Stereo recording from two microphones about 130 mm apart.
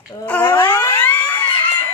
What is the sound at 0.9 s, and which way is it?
Speech, 15° left (ahead or behind).